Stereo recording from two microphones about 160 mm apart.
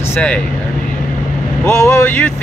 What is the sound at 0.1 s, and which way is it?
Speech, 10° left (ahead or behind).